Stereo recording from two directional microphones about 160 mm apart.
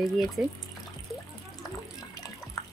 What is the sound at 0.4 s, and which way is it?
Speech, 5° right (ahead or behind).